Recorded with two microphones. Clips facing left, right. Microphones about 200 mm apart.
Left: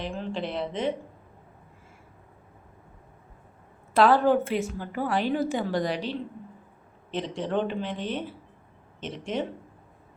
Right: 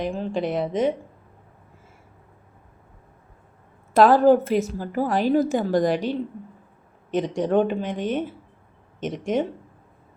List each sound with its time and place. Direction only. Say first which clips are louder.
0.0 s a woman's voice: right 6 dB; 45° right (ahead or behind)
3.9 s a woman's voice: right 5 dB; 45° right (ahead or behind)